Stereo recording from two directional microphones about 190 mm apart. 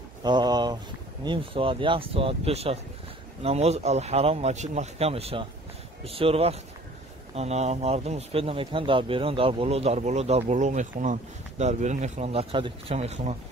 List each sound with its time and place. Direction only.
0.2 s speech: 20° right (ahead or behind)